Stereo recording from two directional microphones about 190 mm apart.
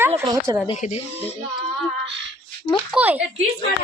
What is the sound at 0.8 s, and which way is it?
Speech, 40° left (ahead or behind).